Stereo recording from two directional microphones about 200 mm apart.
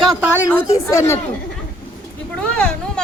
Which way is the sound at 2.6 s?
5° left (ahead or behind).